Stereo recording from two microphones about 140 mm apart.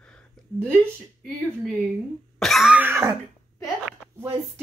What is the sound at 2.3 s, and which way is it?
Cough, centre (ahead or behind).